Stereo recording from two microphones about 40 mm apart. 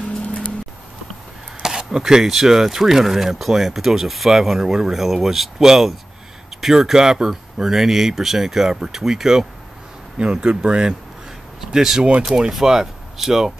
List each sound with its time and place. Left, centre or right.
0.2 s music: left
1.6 s a sound: centre
2.2 s speech: centre
10.1 s speech: right
11.6 s speech: centre
12.3 s speech: right
12.6 s speech: centre